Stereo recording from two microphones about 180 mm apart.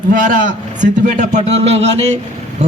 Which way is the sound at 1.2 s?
35° right (ahead or behind).